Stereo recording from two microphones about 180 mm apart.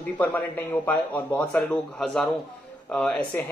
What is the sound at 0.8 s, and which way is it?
Speech, 10° left (ahead or behind).